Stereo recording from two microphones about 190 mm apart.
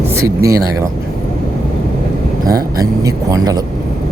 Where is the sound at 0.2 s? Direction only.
15° right (ahead or behind).